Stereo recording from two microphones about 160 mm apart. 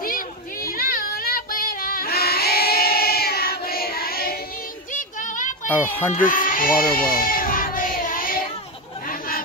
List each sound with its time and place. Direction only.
0.0 s child singing: 65° left (ahead or behind)
4.9 s child singing: 55° left (ahead or behind)
5.7 s a child's voice: 10° left (ahead or behind)
6.1 s a sound: 60° left (ahead or behind)